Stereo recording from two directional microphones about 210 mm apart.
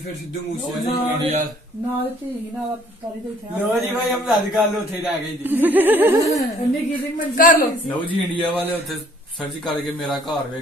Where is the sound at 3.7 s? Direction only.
Centre (ahead or behind).